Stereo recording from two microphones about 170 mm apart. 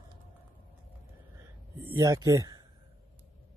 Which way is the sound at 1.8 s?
20° right (ahead or behind).